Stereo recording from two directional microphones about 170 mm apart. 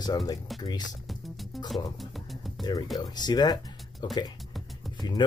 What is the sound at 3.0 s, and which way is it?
Speech, 25° left (ahead or behind).